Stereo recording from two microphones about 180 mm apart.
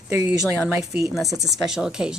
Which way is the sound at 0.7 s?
15° right (ahead or behind).